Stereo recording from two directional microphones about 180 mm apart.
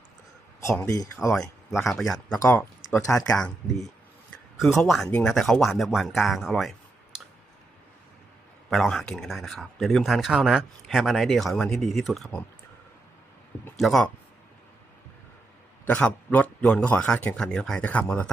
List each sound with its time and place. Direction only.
0.6 s a man's voice: 15° left (ahead or behind)
1.3 s speech: centre (ahead or behind)
2.4 s speech: 10° left (ahead or behind)
4.8 s speech: 5° left (ahead or behind)
8.7 s speech: centre (ahead or behind)
13.7 s speech: centre (ahead or behind)
15.9 s a man's voice: 5° left (ahead or behind)